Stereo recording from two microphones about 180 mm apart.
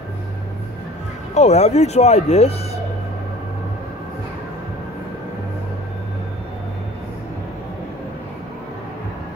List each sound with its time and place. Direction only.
1.3 s speech: 40° left (ahead or behind)